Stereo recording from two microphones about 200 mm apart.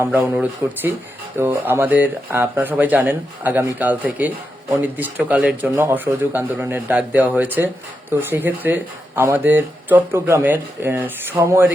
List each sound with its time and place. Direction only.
0.0 s speech: 10° right (ahead or behind)